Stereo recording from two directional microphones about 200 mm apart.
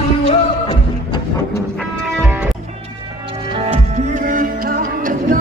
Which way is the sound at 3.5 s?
30° right (ahead or behind).